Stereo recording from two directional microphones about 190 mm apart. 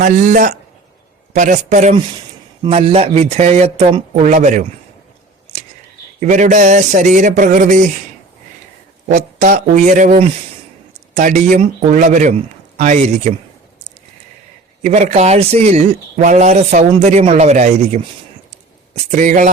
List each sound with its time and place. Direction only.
0.0 s a man's voice: 45° right (ahead or behind)
2.6 s speech: 30° right (ahead or behind)
6.1 s speech: 40° right (ahead or behind)
9.0 s speech: 40° right (ahead or behind)
14.8 s speech: 40° right (ahead or behind)
19.1 s speech: 40° right (ahead or behind)